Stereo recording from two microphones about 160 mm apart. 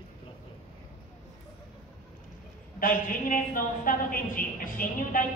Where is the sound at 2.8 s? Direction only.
60° left (ahead or behind).